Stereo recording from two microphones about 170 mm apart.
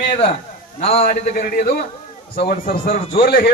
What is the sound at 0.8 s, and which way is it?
Speech, 40° left (ahead or behind).